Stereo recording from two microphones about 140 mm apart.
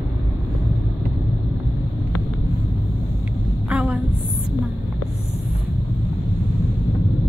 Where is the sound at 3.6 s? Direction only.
10° right (ahead or behind).